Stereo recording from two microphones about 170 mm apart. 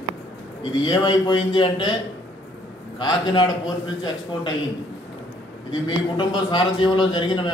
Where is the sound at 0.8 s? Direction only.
25° left (ahead or behind).